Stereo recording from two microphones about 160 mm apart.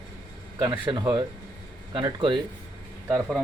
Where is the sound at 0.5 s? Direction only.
15° right (ahead or behind).